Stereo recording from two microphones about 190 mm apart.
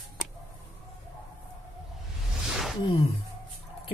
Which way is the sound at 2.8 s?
25° left (ahead or behind).